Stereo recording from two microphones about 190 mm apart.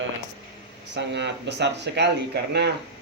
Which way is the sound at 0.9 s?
65° right (ahead or behind).